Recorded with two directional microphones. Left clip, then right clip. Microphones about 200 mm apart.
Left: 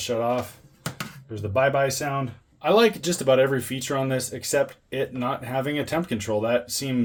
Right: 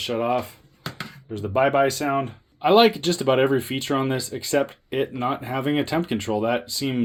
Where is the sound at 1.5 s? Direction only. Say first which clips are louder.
Right 2 dB; 35° right (ahead or behind).